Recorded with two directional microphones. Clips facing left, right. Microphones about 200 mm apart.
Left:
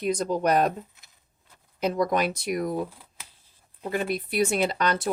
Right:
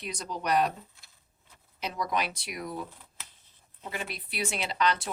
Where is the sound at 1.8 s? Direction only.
50° left (ahead or behind).